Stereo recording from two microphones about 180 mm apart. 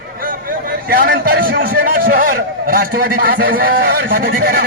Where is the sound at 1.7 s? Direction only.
50° right (ahead or behind).